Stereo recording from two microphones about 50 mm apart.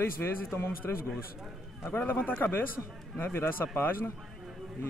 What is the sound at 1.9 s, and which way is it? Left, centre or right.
Speech, left.